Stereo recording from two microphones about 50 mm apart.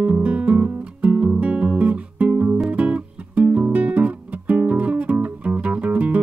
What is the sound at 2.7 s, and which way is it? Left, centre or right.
Guitar, right.